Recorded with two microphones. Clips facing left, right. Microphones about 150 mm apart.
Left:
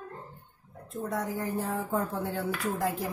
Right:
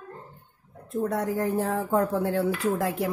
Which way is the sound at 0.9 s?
70° right (ahead or behind).